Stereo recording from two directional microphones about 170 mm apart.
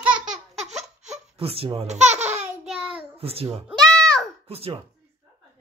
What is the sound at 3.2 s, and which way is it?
Speech, 35° right (ahead or behind).